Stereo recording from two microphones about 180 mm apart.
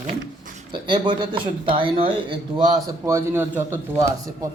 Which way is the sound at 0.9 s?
25° right (ahead or behind).